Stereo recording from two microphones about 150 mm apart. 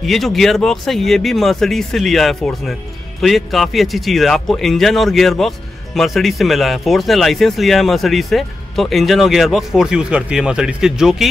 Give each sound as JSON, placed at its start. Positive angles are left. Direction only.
{"t": 0.0, "sound": "speech", "side_deg": 0}